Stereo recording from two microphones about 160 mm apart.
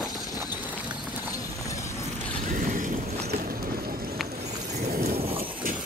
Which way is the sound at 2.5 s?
55° right (ahead or behind).